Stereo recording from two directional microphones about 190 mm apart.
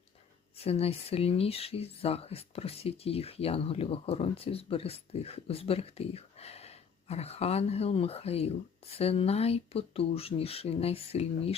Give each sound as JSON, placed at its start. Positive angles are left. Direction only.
{"t": 0.6, "sound": "speech", "side_deg": 30}